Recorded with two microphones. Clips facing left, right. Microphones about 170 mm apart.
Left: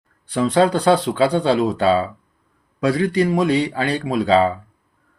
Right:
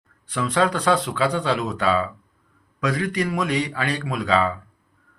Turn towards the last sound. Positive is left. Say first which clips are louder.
# left 6 dB
turn(degrees=30)  # may be behind; listen again after turning